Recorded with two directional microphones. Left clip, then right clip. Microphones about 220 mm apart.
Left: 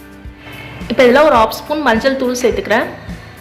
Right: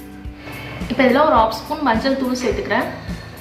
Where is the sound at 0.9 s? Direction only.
50° left (ahead or behind).